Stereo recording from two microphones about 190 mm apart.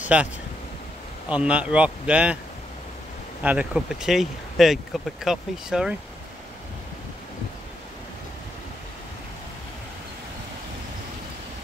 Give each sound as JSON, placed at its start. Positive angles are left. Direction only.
{"t": 0.0, "sound": "speech", "side_deg": -5}
{"t": 1.3, "sound": "speech", "side_deg": -5}
{"t": 3.4, "sound": "speech", "side_deg": -5}